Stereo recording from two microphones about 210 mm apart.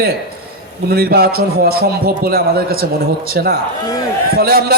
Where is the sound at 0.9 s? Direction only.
45° right (ahead or behind).